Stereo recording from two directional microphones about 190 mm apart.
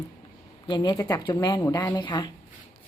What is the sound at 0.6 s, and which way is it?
Speech, 25° left (ahead or behind).